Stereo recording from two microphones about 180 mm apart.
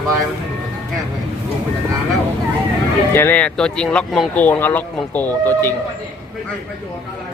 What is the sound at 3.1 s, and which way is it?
Speech, 10° left (ahead or behind).